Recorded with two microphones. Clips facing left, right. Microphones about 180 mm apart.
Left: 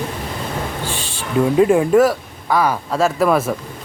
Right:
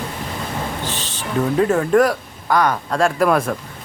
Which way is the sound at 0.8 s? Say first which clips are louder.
Left 1 dB; 10° left (ahead or behind).